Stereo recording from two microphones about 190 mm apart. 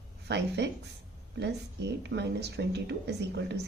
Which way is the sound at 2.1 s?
60° right (ahead or behind).